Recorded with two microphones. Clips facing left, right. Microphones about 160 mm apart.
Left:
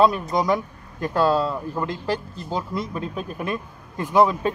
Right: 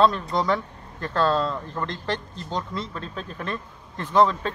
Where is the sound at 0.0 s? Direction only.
10° left (ahead or behind).